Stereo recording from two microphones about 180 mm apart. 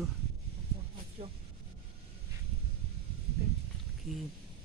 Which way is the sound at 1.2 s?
35° right (ahead or behind).